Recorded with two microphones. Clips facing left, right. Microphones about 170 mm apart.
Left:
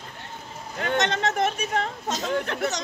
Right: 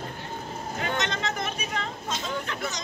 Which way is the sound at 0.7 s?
60° left (ahead or behind).